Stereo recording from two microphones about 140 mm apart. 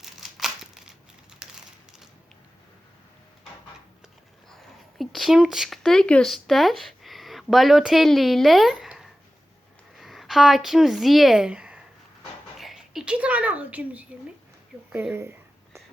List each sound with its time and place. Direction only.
0.0 s crumpling: centre (ahead or behind)
4.5 s speech: centre (ahead or behind)
15.1 s a sound: 15° right (ahead or behind)